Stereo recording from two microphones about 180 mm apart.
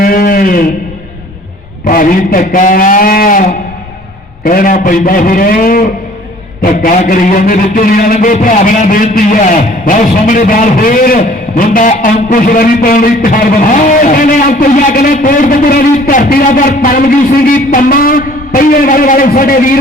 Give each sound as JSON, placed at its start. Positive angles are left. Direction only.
{"t": 0.0, "sound": "a sound", "side_deg": 50}
{"t": 1.9, "sound": "a man's voice", "side_deg": 50}
{"t": 7.0, "sound": "a man's voice", "side_deg": 50}